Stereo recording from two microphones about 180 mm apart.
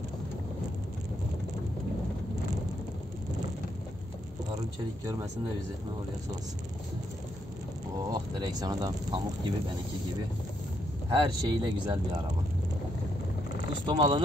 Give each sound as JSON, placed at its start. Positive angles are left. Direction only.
{"t": 8.1, "sound": "speech", "side_deg": -20}
{"t": 11.1, "sound": "speech", "side_deg": -25}
{"t": 13.8, "sound": "speech", "side_deg": -25}